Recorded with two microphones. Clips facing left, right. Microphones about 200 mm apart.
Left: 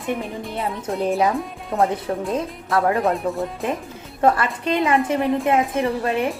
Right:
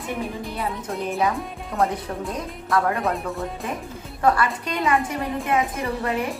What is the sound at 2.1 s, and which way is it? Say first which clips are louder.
Speech: left 5 dB; 30° left (ahead or behind).